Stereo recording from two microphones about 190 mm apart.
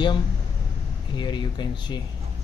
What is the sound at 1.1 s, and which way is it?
Speech, 25° left (ahead or behind).